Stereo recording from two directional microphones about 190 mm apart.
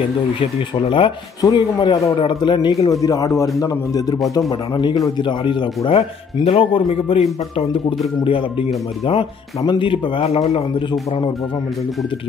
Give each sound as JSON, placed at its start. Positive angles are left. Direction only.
{"t": 0.4, "sound": "a man's voice", "side_deg": 25}